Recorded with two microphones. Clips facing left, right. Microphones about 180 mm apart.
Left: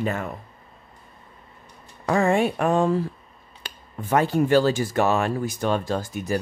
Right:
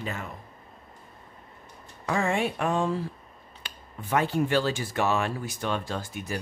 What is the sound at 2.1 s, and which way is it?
Speech, 45° left (ahead or behind).